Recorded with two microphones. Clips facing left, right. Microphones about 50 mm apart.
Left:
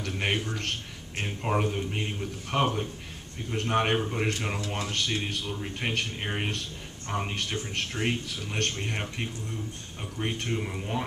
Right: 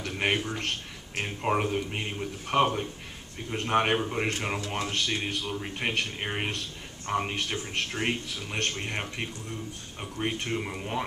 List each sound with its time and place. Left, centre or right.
0.0 s speech: centre
4.3 s speech: centre
4.6 s speech: centre